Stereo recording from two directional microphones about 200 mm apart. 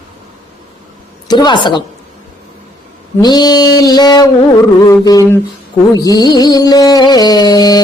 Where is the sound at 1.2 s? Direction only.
20° left (ahead or behind).